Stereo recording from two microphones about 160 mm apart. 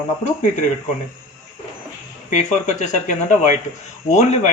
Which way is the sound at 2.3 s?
45° left (ahead or behind).